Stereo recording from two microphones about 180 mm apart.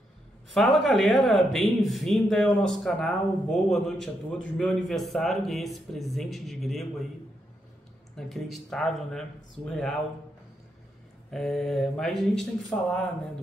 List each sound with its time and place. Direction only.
0.5 s speech: centre (ahead or behind)
8.2 s speech: centre (ahead or behind)
11.2 s speech: centre (ahead or behind)